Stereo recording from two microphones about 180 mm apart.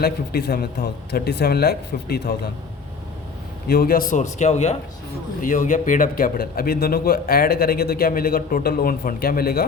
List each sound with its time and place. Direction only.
0.0 s speech: 60° left (ahead or behind)
3.7 s a man's voice: 55° left (ahead or behind)